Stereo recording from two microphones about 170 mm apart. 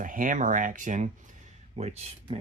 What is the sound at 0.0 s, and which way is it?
Speech, 50° right (ahead or behind).